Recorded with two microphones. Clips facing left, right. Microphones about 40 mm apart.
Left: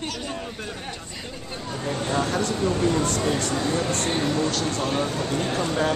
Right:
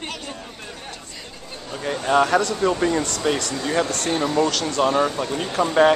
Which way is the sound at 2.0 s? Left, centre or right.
Right.